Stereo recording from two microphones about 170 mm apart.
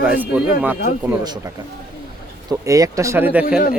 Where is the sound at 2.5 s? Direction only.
20° right (ahead or behind).